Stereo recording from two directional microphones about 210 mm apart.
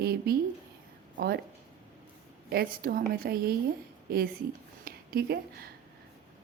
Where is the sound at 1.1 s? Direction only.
50° right (ahead or behind).